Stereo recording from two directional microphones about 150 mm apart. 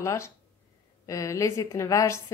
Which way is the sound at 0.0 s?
20° left (ahead or behind).